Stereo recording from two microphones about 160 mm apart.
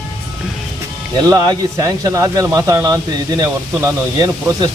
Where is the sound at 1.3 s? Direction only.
25° right (ahead or behind).